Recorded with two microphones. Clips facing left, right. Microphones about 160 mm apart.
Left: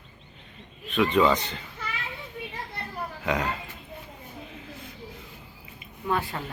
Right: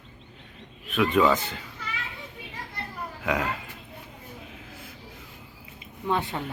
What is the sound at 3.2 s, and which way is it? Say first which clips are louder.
Speech: even; 5° right (ahead or behind).